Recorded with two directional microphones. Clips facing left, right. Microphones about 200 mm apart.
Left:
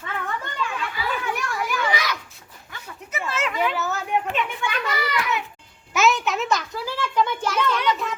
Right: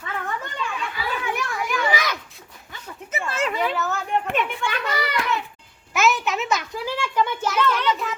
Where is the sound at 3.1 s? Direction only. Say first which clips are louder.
Right 2 dB; 30° right (ahead or behind).